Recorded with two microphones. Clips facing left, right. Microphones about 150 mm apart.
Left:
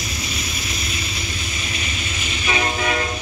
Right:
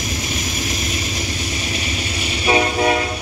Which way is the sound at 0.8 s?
45° right (ahead or behind).